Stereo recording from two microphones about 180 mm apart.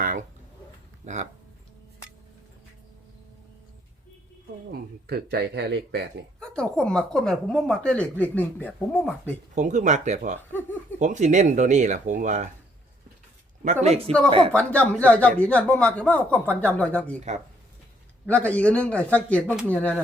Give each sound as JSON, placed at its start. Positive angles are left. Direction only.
{"t": 0.0, "sound": "a sound", "side_deg": -50}
{"t": 1.0, "sound": "speech", "side_deg": -40}
{"t": 4.7, "sound": "speech", "side_deg": -60}
{"t": 6.4, "sound": "speech", "side_deg": 5}
{"t": 9.6, "sound": "speech", "side_deg": -45}
{"t": 13.8, "sound": "speech", "side_deg": -35}
{"t": 14.5, "sound": "speech", "side_deg": 5}
{"t": 18.3, "sound": "speech", "side_deg": 10}